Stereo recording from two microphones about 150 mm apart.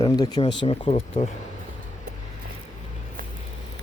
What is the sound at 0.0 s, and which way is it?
Speech, 25° left (ahead or behind).